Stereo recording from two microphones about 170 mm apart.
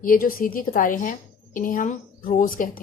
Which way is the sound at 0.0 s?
55° left (ahead or behind).